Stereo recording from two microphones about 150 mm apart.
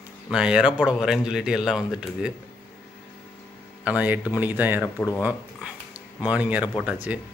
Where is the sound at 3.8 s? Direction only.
10° right (ahead or behind).